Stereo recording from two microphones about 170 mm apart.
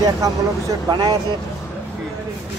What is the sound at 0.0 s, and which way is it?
Speech, 20° right (ahead or behind).